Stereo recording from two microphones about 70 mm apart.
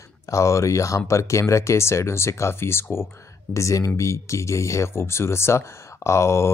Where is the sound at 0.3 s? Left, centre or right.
Left.